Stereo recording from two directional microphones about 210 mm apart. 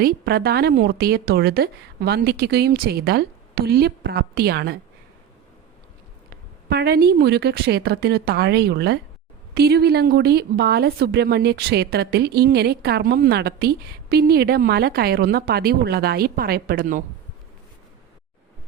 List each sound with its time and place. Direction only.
0.0 s speech: 50° right (ahead or behind)
6.7 s speech: 50° right (ahead or behind)